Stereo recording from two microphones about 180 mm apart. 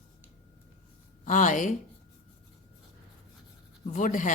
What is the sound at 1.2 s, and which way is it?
Speech, 45° left (ahead or behind).